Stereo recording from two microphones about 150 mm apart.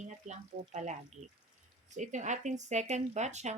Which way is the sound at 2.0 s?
55° right (ahead or behind).